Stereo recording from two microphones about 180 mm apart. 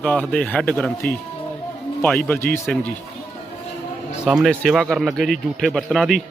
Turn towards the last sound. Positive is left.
turn(degrees=0)  # may be behind; listen again after turning